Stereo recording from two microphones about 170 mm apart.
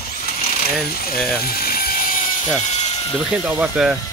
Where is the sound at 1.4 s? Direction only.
60° left (ahead or behind).